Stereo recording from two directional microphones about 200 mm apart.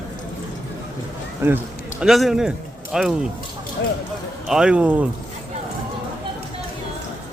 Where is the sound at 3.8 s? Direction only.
55° left (ahead or behind).